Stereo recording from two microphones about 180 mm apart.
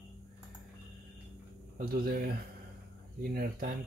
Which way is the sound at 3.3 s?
55° right (ahead or behind).